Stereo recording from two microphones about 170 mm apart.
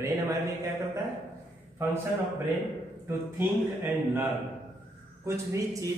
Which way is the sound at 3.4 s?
15° right (ahead or behind).